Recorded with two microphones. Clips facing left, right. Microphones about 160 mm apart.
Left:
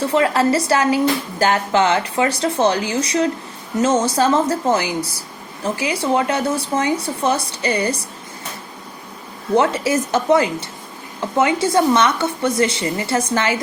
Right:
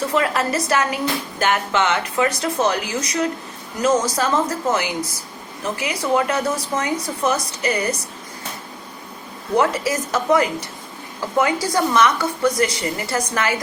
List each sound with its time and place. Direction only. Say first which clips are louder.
0.0 s speech: left 4 dB; 30° left (ahead or behind)
9.6 s speech: left 2 dB; 25° left (ahead or behind)